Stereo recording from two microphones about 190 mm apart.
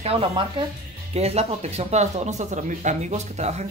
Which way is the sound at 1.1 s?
35° right (ahead or behind).